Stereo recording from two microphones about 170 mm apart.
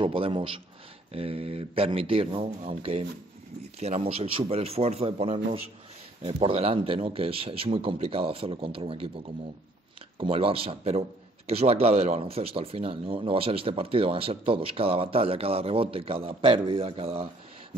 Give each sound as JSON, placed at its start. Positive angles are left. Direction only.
{"t": 0.0, "sound": "a man's voice", "side_deg": -30}